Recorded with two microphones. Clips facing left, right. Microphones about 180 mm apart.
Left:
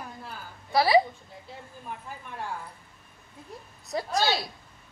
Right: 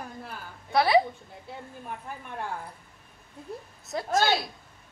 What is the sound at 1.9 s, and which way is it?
Speech, 55° right (ahead or behind).